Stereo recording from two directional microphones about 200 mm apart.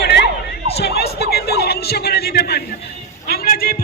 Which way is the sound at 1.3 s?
55° left (ahead or behind).